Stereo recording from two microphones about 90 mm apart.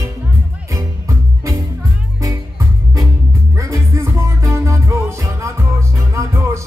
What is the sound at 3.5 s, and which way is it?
Music, 35° right (ahead or behind).